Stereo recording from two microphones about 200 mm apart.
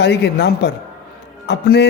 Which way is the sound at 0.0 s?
55° left (ahead or behind).